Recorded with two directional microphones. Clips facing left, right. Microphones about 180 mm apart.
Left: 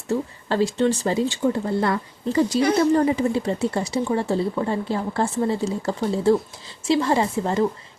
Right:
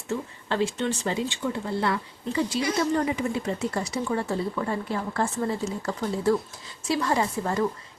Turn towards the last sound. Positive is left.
turn(degrees=25)  # may be behind; listen again after turning